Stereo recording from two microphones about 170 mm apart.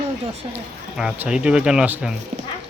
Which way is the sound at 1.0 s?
5° right (ahead or behind).